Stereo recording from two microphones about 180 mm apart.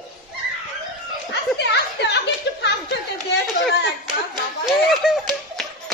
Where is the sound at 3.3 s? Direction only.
70° left (ahead or behind).